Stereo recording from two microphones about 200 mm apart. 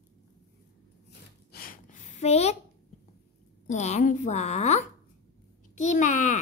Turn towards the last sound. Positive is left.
turn(degrees=35)  # may be behind; listen again after turning